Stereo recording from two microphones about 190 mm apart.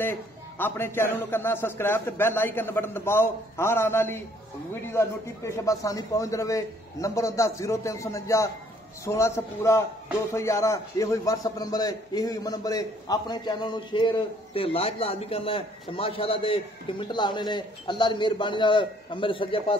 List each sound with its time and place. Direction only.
0.0 s a man's voice: 10° left (ahead or behind); by 19.8 s 25° left (ahead or behind)